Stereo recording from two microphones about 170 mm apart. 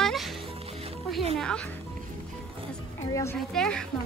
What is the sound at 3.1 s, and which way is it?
Speech, 15° left (ahead or behind).